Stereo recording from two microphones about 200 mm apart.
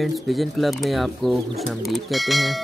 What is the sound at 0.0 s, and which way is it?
Speech, centre (ahead or behind).